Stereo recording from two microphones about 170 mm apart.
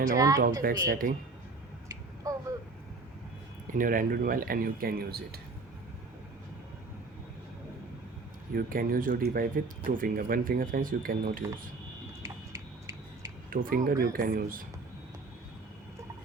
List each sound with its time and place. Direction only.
0.2 s a woman's voice: 20° right (ahead or behind)
0.6 s speech: 55° right (ahead or behind)
2.3 s a sound: 20° right (ahead or behind)
3.7 s speech: 50° right (ahead or behind)
8.5 s speech: 55° right (ahead or behind)
12.2 s a sound: 20° right (ahead or behind)
13.5 s speech: 55° right (ahead or behind)